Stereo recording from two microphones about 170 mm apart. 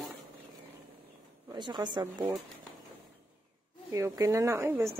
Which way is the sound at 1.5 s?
25° right (ahead or behind).